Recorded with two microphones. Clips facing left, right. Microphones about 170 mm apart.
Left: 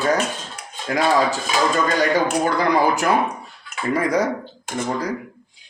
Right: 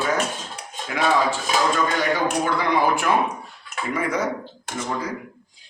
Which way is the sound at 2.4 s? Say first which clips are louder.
Left 3 dB; 40° left (ahead or behind).